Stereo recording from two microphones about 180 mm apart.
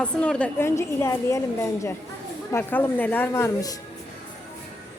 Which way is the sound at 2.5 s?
10° left (ahead or behind).